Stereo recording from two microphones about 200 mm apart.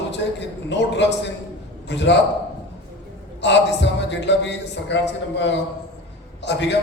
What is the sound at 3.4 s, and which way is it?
A man's voice, 60° left (ahead or behind).